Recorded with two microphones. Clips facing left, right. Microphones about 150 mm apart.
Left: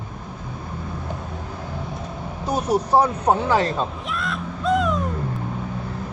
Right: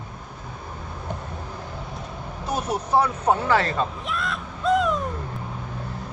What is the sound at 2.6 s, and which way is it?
Speech, 35° left (ahead or behind).